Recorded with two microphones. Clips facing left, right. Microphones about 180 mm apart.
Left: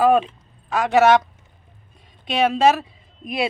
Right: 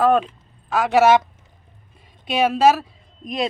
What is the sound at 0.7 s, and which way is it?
Speech, 5° right (ahead or behind).